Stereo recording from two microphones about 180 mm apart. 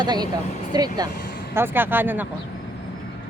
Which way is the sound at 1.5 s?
10° right (ahead or behind).